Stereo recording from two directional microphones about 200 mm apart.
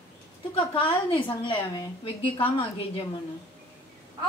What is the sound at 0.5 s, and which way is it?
A woman's voice, 25° left (ahead or behind).